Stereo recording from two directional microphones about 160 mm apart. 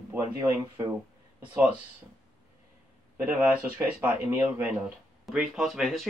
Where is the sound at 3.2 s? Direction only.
10° right (ahead or behind).